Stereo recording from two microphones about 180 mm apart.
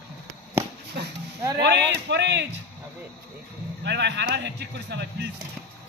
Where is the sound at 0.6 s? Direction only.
15° right (ahead or behind).